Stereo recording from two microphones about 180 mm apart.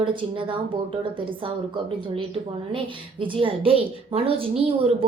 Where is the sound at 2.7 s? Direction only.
30° right (ahead or behind).